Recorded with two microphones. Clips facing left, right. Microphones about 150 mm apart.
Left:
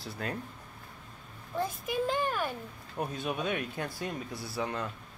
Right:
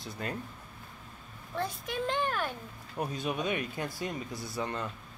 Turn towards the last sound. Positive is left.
turn(degrees=0)  # may be behind; listen again after turning